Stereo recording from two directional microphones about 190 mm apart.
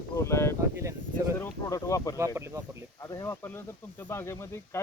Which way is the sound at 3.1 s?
15° left (ahead or behind).